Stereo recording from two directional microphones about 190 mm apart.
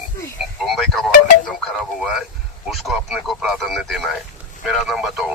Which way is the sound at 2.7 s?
Centre (ahead or behind).